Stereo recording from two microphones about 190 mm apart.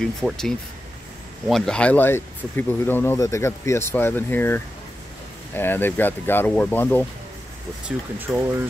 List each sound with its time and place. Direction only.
0.0 s speech: centre (ahead or behind)
8.3 s speech: 5° right (ahead or behind)